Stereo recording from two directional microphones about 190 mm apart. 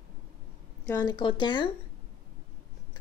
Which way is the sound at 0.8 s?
20° left (ahead or behind).